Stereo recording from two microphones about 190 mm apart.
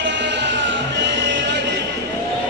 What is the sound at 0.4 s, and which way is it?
Music, 70° right (ahead or behind).